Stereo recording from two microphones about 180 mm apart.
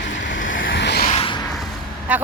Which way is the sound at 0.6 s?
75° left (ahead or behind).